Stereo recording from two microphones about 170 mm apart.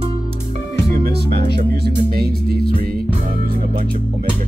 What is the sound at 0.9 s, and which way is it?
Music, 70° right (ahead or behind).